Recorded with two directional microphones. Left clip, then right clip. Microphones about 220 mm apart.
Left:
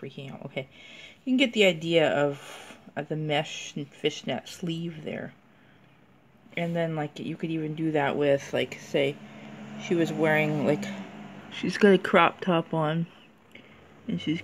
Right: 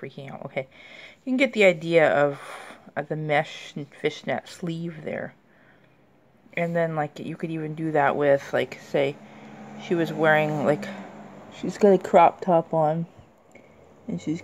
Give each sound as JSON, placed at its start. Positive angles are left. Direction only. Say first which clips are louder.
{"t": 0.0, "sound": "speech", "louder": "right 4 dB", "side_deg": -15}
{"t": 6.5, "sound": "speech", "louder": "right 5 dB", "side_deg": -10}
{"t": 11.5, "sound": "speech", "louder": "right 2 dB", "side_deg": 10}
{"t": 14.0, "sound": "speech", "louder": "even", "side_deg": 0}